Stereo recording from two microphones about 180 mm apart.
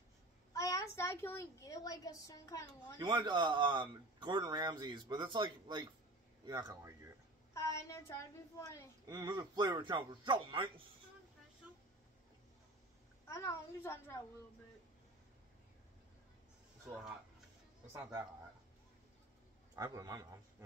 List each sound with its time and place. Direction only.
0.5 s a child's voice: 20° left (ahead or behind)
3.0 s speech: 25° right (ahead or behind)
7.5 s a woman's voice: 15° left (ahead or behind)
9.0 s speech: 20° right (ahead or behind)
13.3 s a woman's voice: 15° left (ahead or behind)
19.7 s speech: 20° right (ahead or behind)